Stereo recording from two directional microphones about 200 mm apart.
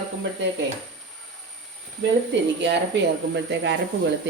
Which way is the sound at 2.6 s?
60° right (ahead or behind).